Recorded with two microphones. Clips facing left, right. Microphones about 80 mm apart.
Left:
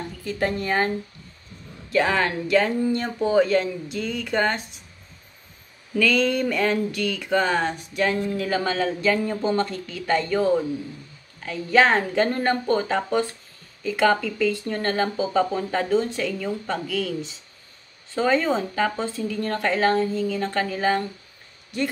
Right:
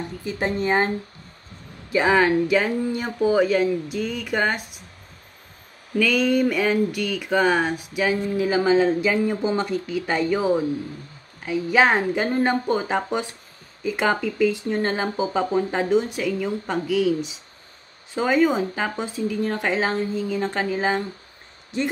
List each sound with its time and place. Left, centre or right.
0.2 s speech: right
1.9 s speech: centre
5.9 s speech: centre